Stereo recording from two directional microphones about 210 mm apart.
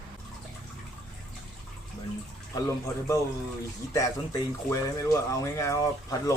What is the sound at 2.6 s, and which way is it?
Speech, 15° left (ahead or behind).